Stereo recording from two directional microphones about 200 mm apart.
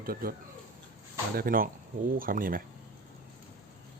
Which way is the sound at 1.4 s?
45° right (ahead or behind).